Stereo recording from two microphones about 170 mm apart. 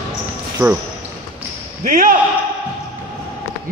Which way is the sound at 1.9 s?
55° right (ahead or behind).